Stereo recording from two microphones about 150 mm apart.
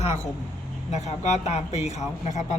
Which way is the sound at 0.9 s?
50° left (ahead or behind).